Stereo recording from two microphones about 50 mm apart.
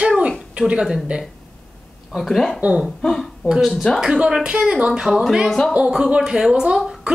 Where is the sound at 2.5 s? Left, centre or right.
Right.